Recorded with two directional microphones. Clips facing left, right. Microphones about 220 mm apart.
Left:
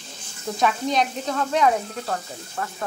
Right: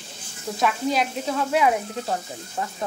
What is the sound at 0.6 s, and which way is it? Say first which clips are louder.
Speech: left 1 dB; 5° right (ahead or behind).